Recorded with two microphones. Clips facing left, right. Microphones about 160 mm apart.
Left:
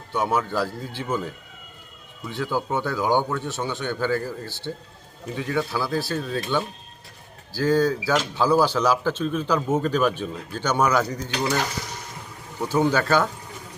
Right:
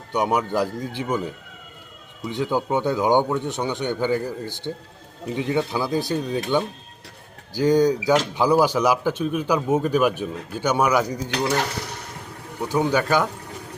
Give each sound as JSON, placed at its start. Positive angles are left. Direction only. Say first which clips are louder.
{"t": 0.1, "sound": "a man's voice", "louder": "right 2 dB", "side_deg": -15}
{"t": 12.6, "sound": "speech", "louder": "even", "side_deg": -15}